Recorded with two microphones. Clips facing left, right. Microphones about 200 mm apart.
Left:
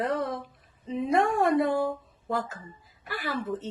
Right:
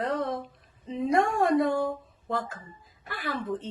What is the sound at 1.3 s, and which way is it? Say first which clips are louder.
Speech: even; centre (ahead or behind).